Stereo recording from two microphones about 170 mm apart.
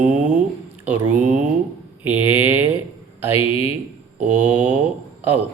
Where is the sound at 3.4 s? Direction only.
35° left (ahead or behind).